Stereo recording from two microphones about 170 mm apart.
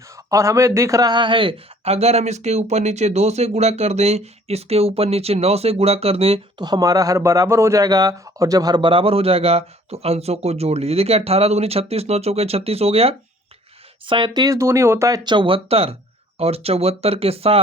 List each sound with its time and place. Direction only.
0.3 s speech: 20° right (ahead or behind); by 6.7 s 35° right (ahead or behind)
6.7 s speech: 20° right (ahead or behind)